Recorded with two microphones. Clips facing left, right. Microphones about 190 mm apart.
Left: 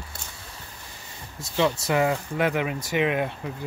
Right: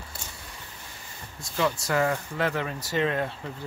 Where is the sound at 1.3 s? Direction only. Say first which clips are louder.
Left 3 dB; 20° left (ahead or behind).